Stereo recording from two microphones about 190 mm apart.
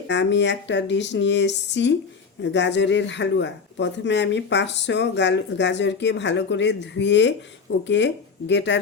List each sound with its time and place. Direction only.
0.1 s speech: 70° left (ahead or behind)